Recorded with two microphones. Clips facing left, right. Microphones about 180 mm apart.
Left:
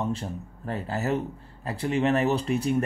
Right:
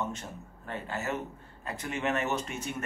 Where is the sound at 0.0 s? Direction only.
35° left (ahead or behind).